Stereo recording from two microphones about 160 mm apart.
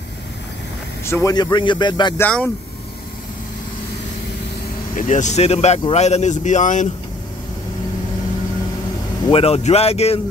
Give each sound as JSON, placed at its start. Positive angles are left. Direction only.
{"t": 1.0, "sound": "a man's voice", "side_deg": 20}
{"t": 2.1, "sound": "speech", "side_deg": 10}
{"t": 4.9, "sound": "speech", "side_deg": 50}
{"t": 9.3, "sound": "speech", "side_deg": 40}